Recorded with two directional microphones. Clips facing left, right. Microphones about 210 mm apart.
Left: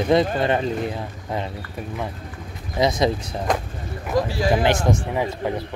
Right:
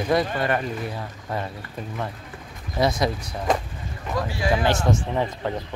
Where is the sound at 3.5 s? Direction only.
Centre (ahead or behind).